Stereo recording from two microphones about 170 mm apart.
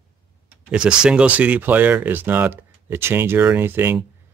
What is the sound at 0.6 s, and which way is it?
Speech, 5° right (ahead or behind).